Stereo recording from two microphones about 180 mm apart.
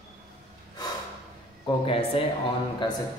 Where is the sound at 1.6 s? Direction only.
30° left (ahead or behind).